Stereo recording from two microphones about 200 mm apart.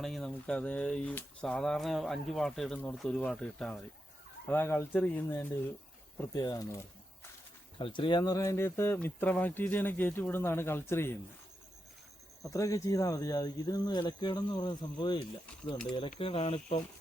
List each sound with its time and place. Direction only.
0.0 s speech: centre (ahead or behind); by 6.7 s 20° left (ahead or behind)
7.8 s speech: 25° left (ahead or behind)
12.4 s speech: 15° left (ahead or behind)